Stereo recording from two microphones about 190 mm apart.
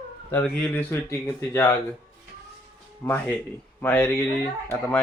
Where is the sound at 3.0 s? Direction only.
15° left (ahead or behind).